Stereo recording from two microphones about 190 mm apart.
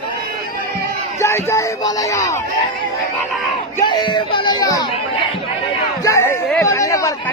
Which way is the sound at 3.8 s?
25° left (ahead or behind).